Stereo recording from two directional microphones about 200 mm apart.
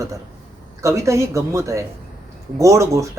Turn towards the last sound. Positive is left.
turn(degrees=-15)  # may be behind; listen again after turning